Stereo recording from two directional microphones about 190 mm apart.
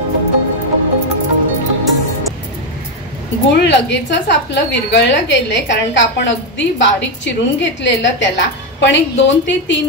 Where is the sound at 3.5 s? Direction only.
65° left (ahead or behind).